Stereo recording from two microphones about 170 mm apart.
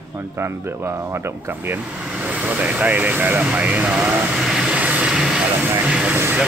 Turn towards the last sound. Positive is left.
turn(degrees=-10)  # may be behind; listen again after turning